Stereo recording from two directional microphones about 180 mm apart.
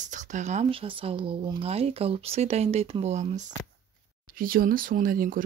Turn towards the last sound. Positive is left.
turn(degrees=-50)  # may be behind; listen again after turning